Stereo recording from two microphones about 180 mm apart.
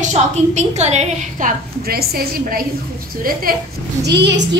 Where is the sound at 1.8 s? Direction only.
55° right (ahead or behind).